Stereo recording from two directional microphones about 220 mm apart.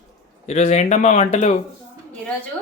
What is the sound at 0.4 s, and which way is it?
Speech, 30° left (ahead or behind).